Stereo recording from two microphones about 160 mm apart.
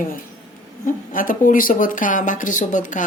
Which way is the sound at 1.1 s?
60° left (ahead or behind).